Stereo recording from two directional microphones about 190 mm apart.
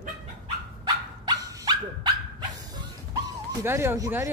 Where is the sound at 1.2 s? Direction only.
20° right (ahead or behind).